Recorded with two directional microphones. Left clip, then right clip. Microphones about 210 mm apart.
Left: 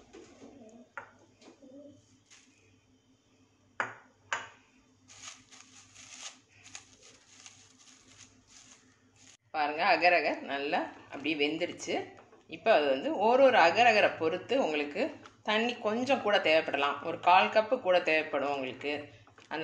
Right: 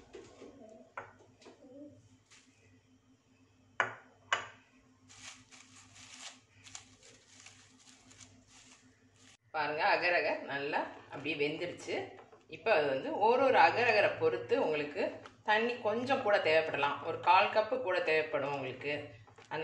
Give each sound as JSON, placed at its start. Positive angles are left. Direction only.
{"t": 9.5, "sound": "a man's voice", "side_deg": 40}